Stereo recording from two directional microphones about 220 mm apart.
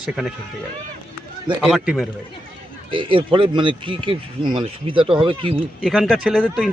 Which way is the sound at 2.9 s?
25° right (ahead or behind).